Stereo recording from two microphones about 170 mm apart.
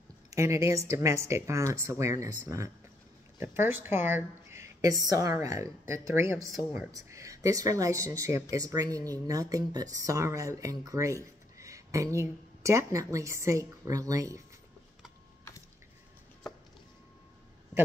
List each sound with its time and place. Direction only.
0.3 s speech: 20° right (ahead or behind)